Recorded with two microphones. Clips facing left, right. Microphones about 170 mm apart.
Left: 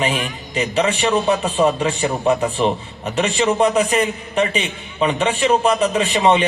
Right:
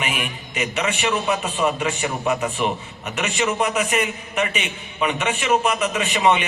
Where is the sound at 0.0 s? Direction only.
30° left (ahead or behind).